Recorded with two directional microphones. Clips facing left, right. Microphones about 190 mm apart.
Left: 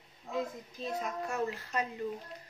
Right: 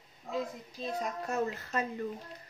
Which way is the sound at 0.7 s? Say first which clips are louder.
Right 1 dB; 40° right (ahead or behind).